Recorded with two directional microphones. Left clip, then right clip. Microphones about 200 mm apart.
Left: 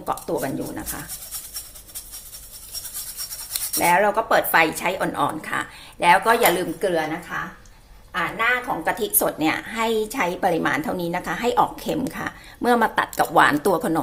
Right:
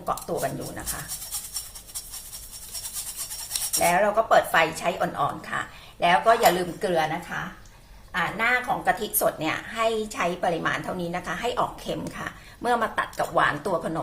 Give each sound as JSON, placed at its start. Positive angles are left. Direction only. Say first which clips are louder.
{"t": 0.0, "sound": "speech", "louder": "left 2 dB", "side_deg": 35}
{"t": 3.8, "sound": "speech", "louder": "left 3 dB", "side_deg": 40}
{"t": 6.8, "sound": "a woman's voice", "louder": "even", "side_deg": 25}
{"t": 8.1, "sound": "speech", "louder": "left 2 dB", "side_deg": 15}
{"t": 8.8, "sound": "speech", "louder": "left 1 dB", "side_deg": 30}